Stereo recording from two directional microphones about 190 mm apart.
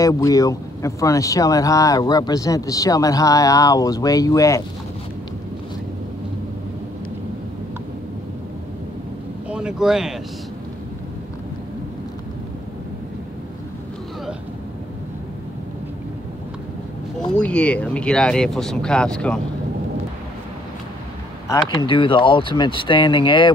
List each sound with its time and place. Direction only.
0.0 s speech: 20° left (ahead or behind)
9.5 s vehicle: 5° right (ahead or behind)
17.4 s speech: 5° left (ahead or behind)
21.5 s speech: 20° left (ahead or behind)